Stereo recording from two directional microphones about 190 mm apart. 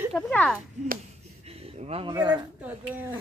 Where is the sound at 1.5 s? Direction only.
30° right (ahead or behind).